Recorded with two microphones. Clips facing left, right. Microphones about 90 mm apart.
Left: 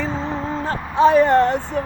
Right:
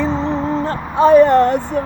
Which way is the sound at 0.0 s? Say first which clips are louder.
Right 6 dB; 25° right (ahead or behind).